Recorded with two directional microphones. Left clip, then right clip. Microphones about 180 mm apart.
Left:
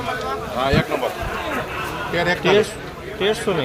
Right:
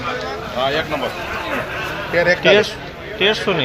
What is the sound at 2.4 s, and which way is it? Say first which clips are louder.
Speech: right 4 dB; centre (ahead or behind).